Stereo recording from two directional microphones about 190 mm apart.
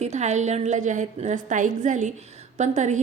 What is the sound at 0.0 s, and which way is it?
Speech, 35° right (ahead or behind).